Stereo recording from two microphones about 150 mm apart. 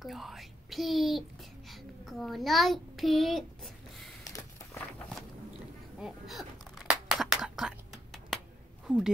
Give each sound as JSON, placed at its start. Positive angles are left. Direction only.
{"t": 0.0, "sound": "a woman's voice", "side_deg": 0}
{"t": 4.2, "sound": "a sound", "side_deg": 20}
{"t": 5.9, "sound": "whispering", "side_deg": 0}
{"t": 8.8, "sound": "speech", "side_deg": -5}